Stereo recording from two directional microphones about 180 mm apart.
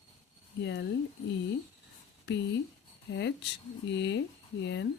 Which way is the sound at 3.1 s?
75° left (ahead or behind).